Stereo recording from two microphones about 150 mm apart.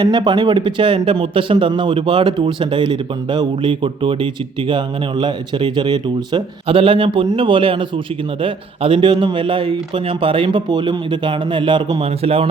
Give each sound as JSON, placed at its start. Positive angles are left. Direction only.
{"t": 0.0, "sound": "speech", "side_deg": -30}